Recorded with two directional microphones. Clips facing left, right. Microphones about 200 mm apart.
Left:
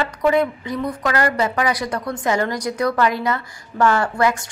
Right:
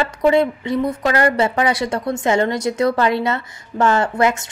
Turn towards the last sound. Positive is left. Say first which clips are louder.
# right 2 dB
turn(degrees=-25)  # may be behind; listen again after turning